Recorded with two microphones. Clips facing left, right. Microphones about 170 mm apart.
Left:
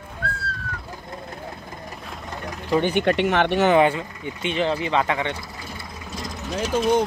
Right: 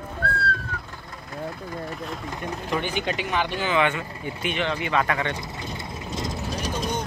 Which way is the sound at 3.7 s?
35° left (ahead or behind).